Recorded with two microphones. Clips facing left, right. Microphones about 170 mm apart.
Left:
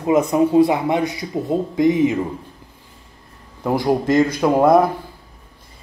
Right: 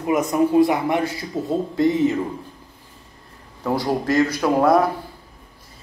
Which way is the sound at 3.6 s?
15° left (ahead or behind).